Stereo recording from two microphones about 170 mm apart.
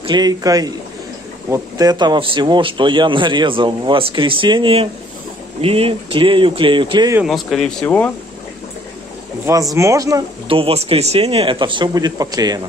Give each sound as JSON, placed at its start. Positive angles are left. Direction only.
{"t": 0.0, "sound": "speech", "side_deg": -25}
{"t": 7.2, "sound": "speech", "side_deg": 0}
{"t": 9.8, "sound": "speech", "side_deg": -20}
{"t": 10.5, "sound": "speech", "side_deg": -35}